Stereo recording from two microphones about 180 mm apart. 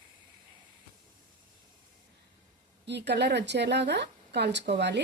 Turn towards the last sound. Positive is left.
turn(degrees=-70)  # may be behind; listen again after turning